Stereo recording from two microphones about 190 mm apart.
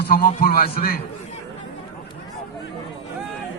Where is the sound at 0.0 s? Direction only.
50° left (ahead or behind).